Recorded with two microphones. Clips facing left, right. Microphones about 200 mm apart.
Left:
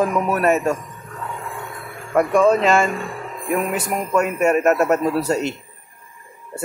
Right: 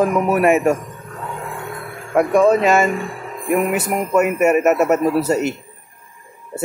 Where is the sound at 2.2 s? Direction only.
Centre (ahead or behind).